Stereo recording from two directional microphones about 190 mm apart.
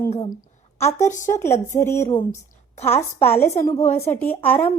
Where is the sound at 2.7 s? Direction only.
30° left (ahead or behind).